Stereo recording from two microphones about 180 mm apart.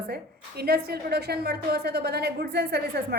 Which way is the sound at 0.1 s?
60° right (ahead or behind).